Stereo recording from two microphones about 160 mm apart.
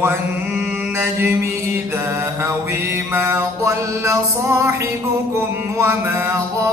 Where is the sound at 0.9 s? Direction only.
15° right (ahead or behind).